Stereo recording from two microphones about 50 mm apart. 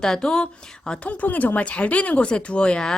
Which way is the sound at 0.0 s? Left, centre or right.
Centre.